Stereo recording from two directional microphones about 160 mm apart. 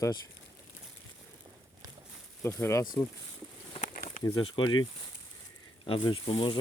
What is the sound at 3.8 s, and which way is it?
Bird, 55° left (ahead or behind).